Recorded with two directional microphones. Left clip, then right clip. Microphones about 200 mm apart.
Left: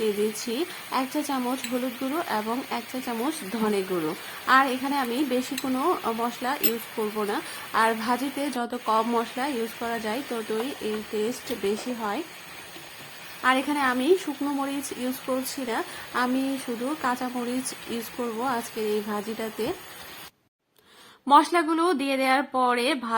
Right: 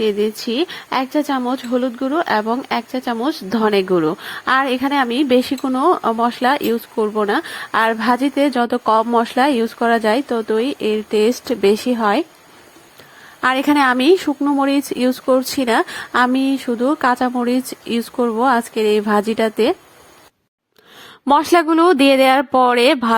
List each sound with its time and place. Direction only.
0.0 s speech: 25° right (ahead or behind)
13.4 s a woman's voice: 45° right (ahead or behind)
21.2 s speech: 40° right (ahead or behind)